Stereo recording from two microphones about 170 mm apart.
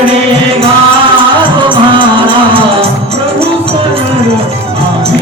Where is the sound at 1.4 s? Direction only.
30° right (ahead or behind).